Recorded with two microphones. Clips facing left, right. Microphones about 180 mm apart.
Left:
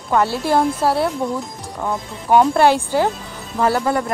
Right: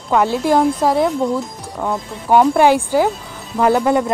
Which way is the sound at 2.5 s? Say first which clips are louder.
Right 2 dB; 15° right (ahead or behind).